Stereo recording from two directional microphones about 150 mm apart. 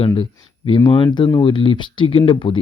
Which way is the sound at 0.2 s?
30° left (ahead or behind).